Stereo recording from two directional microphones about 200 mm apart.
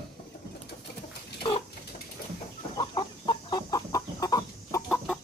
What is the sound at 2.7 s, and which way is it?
Chicken, 25° left (ahead or behind).